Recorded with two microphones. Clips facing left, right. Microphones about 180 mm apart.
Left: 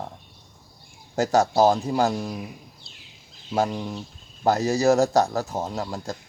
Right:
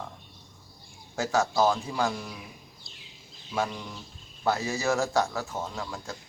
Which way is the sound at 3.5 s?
40° left (ahead or behind).